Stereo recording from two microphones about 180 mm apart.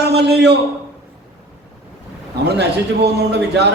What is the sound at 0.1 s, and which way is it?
Speech, 65° right (ahead or behind).